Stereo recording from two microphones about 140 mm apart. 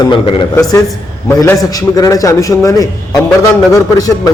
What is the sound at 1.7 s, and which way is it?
A man's voice, 25° left (ahead or behind).